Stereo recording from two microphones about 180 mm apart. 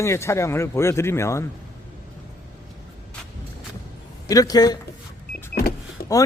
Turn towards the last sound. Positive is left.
turn(degrees=55)  # may be behind; listen again after turning